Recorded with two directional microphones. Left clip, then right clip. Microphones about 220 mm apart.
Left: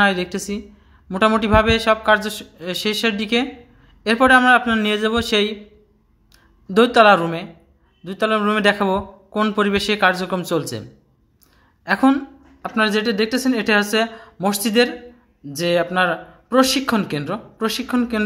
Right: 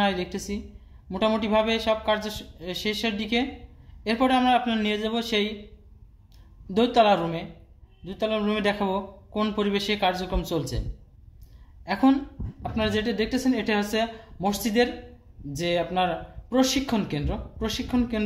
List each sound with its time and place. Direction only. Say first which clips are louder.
0.0 s speech: left 8 dB; 15° left (ahead or behind)
6.7 s a man's voice: left 8 dB; 15° left (ahead or behind)
11.8 s a woman's voice: left 6 dB; 15° left (ahead or behind)